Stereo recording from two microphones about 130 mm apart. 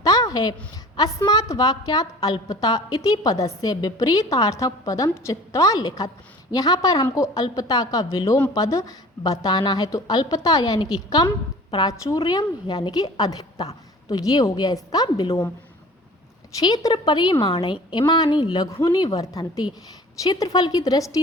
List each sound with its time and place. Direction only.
0.0 s a sound: 25° left (ahead or behind)
0.9 s a woman's voice: 30° left (ahead or behind)
16.6 s a woman's voice: 30° left (ahead or behind)